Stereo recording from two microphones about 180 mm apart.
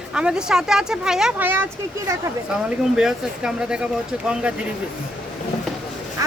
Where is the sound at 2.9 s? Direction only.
5° right (ahead or behind).